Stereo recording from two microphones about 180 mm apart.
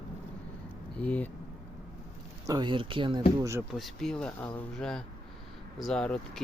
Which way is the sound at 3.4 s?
15° right (ahead or behind).